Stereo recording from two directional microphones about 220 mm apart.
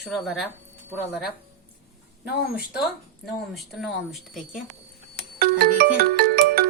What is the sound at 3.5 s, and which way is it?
Speech, centre (ahead or behind).